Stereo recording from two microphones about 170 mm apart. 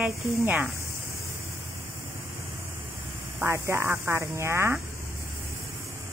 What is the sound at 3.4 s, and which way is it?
Speech, 15° right (ahead or behind).